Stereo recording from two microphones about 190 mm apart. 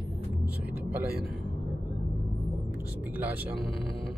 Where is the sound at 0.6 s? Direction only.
10° right (ahead or behind).